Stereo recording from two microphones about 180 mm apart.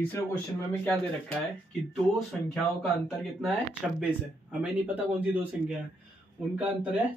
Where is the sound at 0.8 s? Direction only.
10° left (ahead or behind).